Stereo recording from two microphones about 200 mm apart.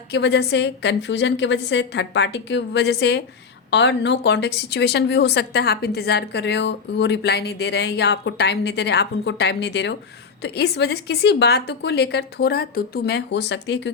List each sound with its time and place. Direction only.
0.1 s speech: 55° left (ahead or behind)